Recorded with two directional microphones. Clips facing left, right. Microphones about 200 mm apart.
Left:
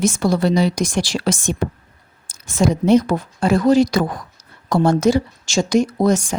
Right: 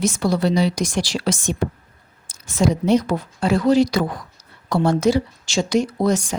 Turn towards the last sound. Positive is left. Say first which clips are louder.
# left 3 dB
turn(degrees=50)  # may be behind; listen again after turning